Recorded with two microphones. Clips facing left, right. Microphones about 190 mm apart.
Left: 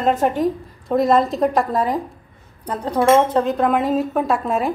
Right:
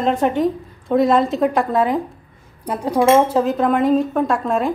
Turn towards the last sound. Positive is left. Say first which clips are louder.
# right 1 dB
turn(degrees=5)  # may be behind; listen again after turning